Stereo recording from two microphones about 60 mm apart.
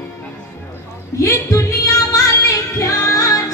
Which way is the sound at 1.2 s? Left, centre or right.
Left.